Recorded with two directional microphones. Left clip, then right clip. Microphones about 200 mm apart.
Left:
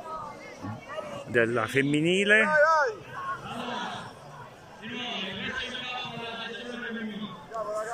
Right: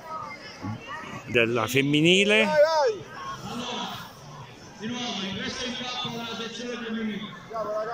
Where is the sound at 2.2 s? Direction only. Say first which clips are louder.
Right 1 dB; 20° right (ahead or behind).